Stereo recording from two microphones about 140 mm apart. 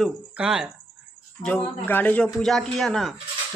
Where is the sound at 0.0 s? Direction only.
5° right (ahead or behind).